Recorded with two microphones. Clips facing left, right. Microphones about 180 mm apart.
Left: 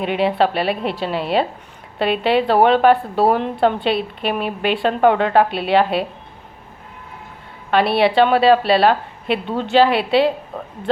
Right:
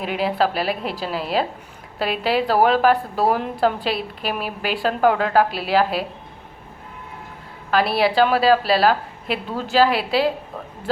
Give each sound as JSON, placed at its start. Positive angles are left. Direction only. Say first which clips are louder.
{"t": 0.0, "sound": "a woman's voice", "louder": "left 4 dB", "side_deg": 0}
{"t": 7.7, "sound": "a woman's voice", "louder": "left 3 dB", "side_deg": 0}